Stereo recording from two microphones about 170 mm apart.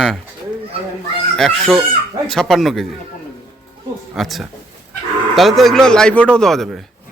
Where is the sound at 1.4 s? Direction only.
Centre (ahead or behind).